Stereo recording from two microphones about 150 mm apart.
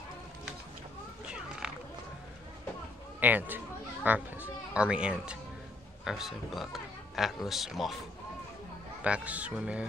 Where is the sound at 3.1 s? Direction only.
10° right (ahead or behind).